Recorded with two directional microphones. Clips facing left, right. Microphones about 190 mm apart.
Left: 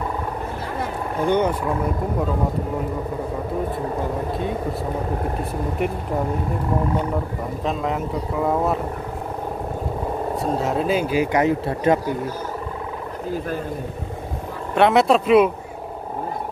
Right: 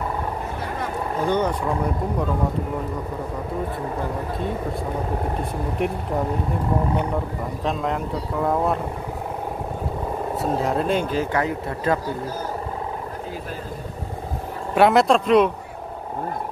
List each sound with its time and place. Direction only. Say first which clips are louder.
1.3 s speech: left 3 dB; 10° left (ahead or behind)
5.8 s speech: even; centre (ahead or behind)
7.6 s speech: left 1 dB; centre (ahead or behind)
10.4 s speech: even; centre (ahead or behind)
11.4 s speech: left 5 dB; 20° left (ahead or behind)
14.8 s speech: even; centre (ahead or behind)